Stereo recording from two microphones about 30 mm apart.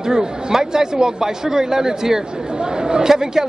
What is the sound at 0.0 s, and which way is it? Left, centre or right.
A man's voice, centre.